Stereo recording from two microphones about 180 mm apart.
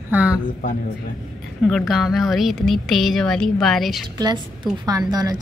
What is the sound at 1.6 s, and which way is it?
Speech, centre (ahead or behind).